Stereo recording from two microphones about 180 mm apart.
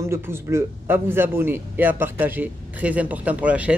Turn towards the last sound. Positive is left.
turn(degrees=-10)  # may be behind; listen again after turning